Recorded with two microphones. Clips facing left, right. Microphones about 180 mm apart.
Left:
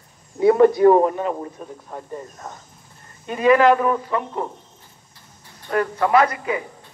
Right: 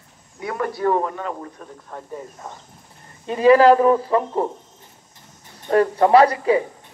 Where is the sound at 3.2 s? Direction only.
30° right (ahead or behind).